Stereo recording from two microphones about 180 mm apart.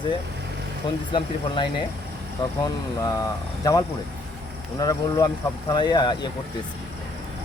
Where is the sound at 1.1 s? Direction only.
25° left (ahead or behind).